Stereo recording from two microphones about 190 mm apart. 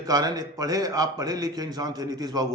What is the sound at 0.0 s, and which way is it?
A man's voice, 20° right (ahead or behind).